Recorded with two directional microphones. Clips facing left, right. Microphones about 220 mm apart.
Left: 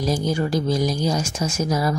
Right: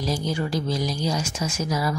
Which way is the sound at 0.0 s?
45° left (ahead or behind).